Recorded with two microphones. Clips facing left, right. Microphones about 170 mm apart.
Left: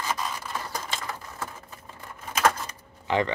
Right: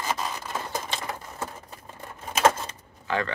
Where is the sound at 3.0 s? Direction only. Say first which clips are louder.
Left 3 dB; 20° left (ahead or behind).